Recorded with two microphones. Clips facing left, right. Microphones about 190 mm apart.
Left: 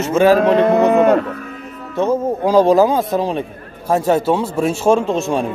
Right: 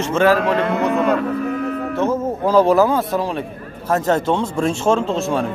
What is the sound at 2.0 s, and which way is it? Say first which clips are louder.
A man's voice: left 4 dB; 15° left (ahead or behind).